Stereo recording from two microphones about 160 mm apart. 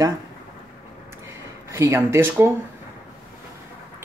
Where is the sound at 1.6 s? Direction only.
15° right (ahead or behind).